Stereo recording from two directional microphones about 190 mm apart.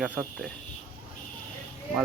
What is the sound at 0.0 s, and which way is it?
Speech, 10° right (ahead or behind).